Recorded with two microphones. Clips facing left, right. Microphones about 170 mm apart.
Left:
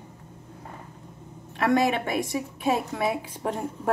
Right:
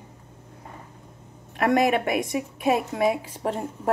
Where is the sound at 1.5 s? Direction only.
50° right (ahead or behind).